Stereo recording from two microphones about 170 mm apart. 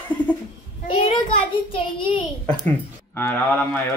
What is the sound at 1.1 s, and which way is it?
Child singing, 30° left (ahead or behind).